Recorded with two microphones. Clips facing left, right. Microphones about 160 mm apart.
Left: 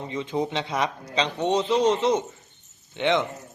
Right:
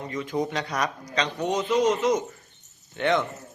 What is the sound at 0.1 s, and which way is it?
Speech, 25° left (ahead or behind).